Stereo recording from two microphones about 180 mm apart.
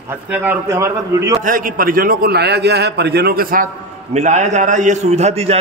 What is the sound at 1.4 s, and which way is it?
A man's voice, 50° right (ahead or behind).